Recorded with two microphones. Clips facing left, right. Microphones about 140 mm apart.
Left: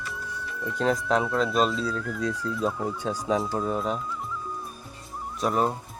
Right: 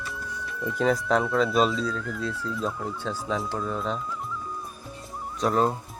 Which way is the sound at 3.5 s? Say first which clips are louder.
Left 3 dB; 25° left (ahead or behind).